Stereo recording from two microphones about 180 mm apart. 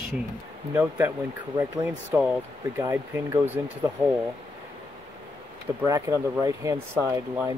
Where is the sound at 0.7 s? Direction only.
15° right (ahead or behind).